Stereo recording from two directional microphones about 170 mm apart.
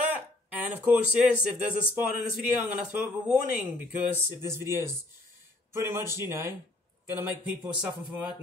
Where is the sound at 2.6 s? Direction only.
5° right (ahead or behind).